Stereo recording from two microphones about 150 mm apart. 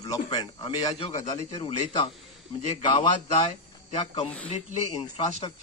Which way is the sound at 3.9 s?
45° left (ahead or behind).